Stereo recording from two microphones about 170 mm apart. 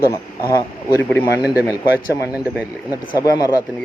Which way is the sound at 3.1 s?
20° left (ahead or behind).